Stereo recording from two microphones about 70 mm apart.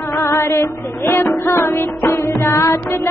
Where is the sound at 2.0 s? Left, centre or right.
Left.